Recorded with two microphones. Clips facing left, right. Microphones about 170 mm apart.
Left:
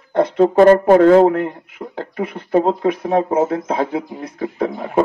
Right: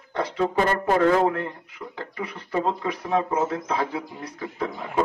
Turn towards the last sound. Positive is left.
turn(degrees=55)  # may be behind; listen again after turning